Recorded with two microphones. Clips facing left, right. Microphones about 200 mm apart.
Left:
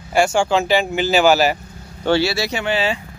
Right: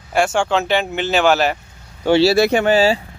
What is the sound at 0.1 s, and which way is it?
Speech, centre (ahead or behind).